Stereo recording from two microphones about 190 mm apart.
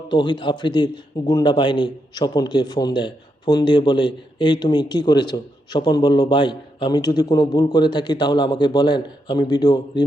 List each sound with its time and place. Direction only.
0.1 s a man's voice: 25° left (ahead or behind)